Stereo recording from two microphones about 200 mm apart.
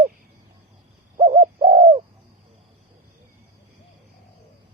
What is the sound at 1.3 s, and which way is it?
Bird, 25° right (ahead or behind).